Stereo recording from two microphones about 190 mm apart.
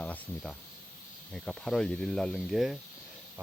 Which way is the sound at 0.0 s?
5° left (ahead or behind).